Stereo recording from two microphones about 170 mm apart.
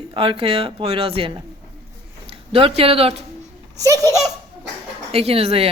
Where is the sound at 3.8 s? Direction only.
20° right (ahead or behind).